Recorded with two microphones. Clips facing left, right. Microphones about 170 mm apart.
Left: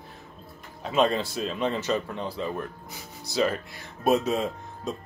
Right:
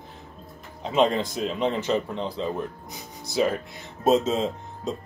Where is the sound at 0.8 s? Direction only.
20° right (ahead or behind).